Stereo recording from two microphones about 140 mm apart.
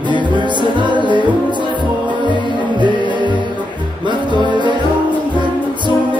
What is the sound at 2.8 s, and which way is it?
Music, 35° right (ahead or behind).